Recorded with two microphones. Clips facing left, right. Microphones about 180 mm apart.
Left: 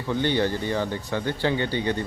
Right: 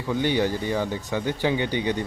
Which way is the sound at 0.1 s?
10° right (ahead or behind).